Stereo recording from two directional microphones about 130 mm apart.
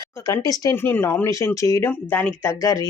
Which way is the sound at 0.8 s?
15° left (ahead or behind).